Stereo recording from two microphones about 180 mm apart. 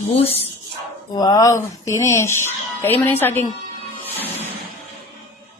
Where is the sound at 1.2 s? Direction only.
20° left (ahead or behind).